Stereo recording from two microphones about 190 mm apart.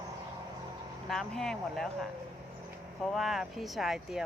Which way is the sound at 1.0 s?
Centre (ahead or behind).